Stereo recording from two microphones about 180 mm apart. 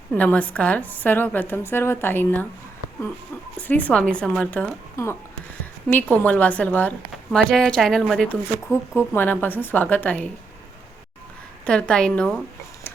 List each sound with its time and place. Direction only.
0.1 s a woman's voice: 10° left (ahead or behind)
3.6 s a woman's voice: 10° left (ahead or behind)
11.6 s speech: 5° left (ahead or behind)